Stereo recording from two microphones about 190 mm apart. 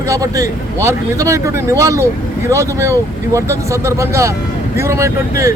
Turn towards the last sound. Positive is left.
turn(degrees=-15)  # may be behind; listen again after turning